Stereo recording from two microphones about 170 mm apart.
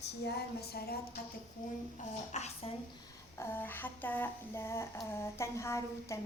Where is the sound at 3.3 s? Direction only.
15° left (ahead or behind).